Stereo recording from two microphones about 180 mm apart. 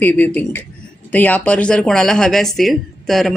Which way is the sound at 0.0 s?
10° left (ahead or behind).